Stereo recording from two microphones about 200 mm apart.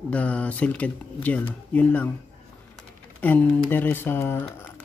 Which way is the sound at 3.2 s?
10° left (ahead or behind).